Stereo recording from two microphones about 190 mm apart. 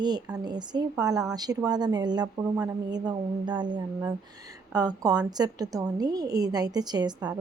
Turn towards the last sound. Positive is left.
turn(degrees=-20)  # may be behind; listen again after turning